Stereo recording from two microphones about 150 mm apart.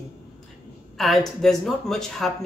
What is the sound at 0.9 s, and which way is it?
A man's voice, centre (ahead or behind).